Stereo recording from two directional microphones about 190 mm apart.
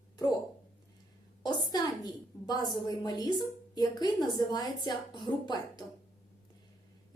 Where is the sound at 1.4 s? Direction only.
20° left (ahead or behind).